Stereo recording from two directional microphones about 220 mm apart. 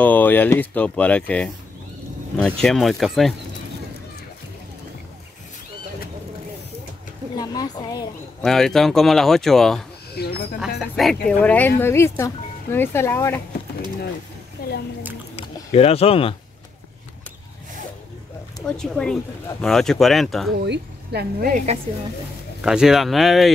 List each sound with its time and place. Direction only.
0.0 s speech: 10° left (ahead or behind)
2.6 s speech: centre (ahead or behind)
7.3 s a woman's voice: 20° left (ahead or behind)
8.4 s speech: centre (ahead or behind)
10.2 s speech: 45° left (ahead or behind)
10.8 s speech: centre (ahead or behind)
14.6 s a sound: 40° left (ahead or behind)
15.3 s speech: 25° left (ahead or behind)
18.7 s speech: 5° left (ahead or behind)
20.6 s a woman's voice: 50° right (ahead or behind)
22.6 s speech: 5° right (ahead or behind)